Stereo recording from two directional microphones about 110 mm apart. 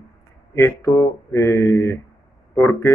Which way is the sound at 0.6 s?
25° left (ahead or behind).